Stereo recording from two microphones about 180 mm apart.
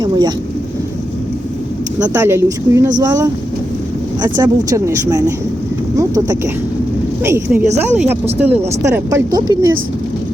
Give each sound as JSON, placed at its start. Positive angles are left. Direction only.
{"t": 0.0, "sound": "speech", "side_deg": -25}
{"t": 2.0, "sound": "speech", "side_deg": -15}
{"t": 4.4, "sound": "speech", "side_deg": -20}